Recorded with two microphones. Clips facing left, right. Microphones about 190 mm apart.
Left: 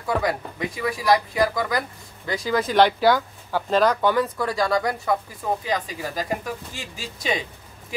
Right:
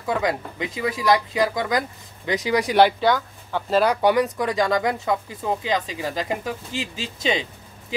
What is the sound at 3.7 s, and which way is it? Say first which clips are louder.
Speech: right 1 dB; 10° right (ahead or behind).